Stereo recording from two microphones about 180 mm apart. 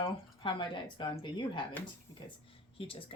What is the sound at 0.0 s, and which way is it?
Speech, 25° left (ahead or behind).